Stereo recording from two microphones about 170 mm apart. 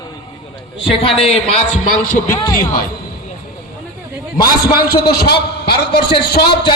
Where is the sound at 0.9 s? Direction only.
35° left (ahead or behind).